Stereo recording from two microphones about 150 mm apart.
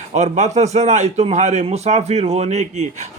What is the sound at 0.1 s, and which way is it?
A man's voice, 50° right (ahead or behind).